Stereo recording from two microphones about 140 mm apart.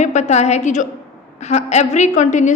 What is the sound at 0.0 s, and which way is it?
A woman's voice, 55° left (ahead or behind).